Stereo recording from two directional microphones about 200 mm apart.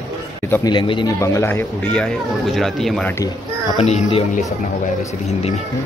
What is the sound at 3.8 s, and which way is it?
Speech, 30° left (ahead or behind).